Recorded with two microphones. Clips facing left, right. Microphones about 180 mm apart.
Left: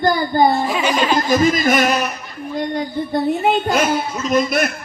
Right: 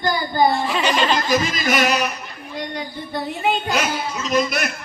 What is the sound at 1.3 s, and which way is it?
A child's voice, 45° left (ahead or behind).